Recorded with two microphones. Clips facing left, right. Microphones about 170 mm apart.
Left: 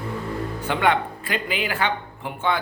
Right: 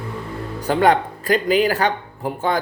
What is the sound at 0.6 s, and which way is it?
Speech, 40° right (ahead or behind).